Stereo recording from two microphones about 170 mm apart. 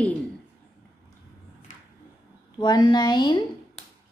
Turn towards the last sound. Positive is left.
turn(degrees=25)  # may be behind; listen again after turning